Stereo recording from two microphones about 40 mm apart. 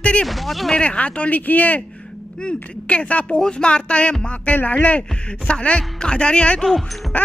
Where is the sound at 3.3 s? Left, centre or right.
Left.